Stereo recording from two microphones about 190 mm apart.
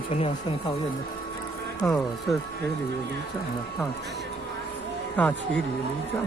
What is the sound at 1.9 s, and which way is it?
Speech, 5° left (ahead or behind).